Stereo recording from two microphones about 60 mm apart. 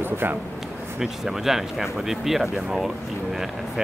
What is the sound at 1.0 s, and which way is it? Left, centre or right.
Speech, centre.